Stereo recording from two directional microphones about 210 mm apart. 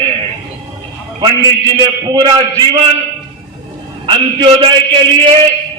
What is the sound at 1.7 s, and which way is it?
Speech, 20° right (ahead or behind).